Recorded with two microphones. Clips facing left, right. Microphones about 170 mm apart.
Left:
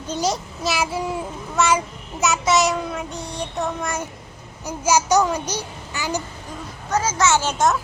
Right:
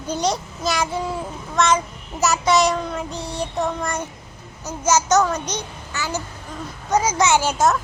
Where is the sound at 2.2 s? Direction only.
Centre (ahead or behind).